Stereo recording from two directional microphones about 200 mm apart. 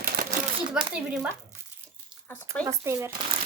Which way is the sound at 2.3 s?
10° left (ahead or behind).